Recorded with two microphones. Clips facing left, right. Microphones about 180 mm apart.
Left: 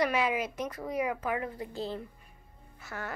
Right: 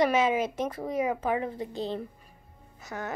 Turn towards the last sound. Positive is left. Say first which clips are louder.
# right 4 dB
turn(degrees=-20)  # may be behind; listen again after turning